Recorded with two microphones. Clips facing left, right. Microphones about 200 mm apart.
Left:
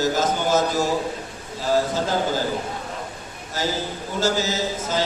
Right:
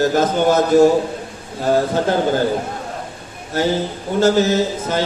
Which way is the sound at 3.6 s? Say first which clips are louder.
Right 7 dB; 60° right (ahead or behind).